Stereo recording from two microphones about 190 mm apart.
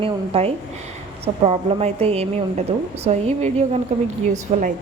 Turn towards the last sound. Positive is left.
turn(degrees=-40)  # may be behind; listen again after turning